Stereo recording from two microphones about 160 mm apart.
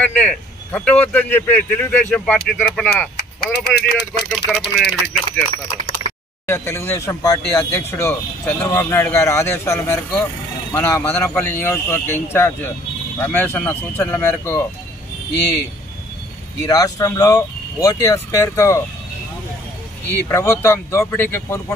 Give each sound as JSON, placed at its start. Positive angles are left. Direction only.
{"t": 0.0, "sound": "speech", "side_deg": 10}
{"t": 3.2, "sound": "speech", "side_deg": 90}
{"t": 4.3, "sound": "speech", "side_deg": 5}
{"t": 16.6, "sound": "speech", "side_deg": 20}
{"t": 20.2, "sound": "speech", "side_deg": 15}